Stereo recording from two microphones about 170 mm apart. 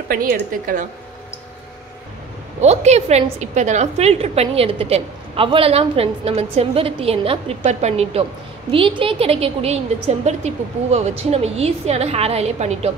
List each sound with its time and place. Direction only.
0.1 s a woman's voice: 55° right (ahead or behind)
2.6 s a woman's voice: 40° right (ahead or behind)